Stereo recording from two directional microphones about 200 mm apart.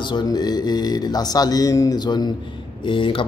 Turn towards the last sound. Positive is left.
turn(degrees=25)  # may be behind; listen again after turning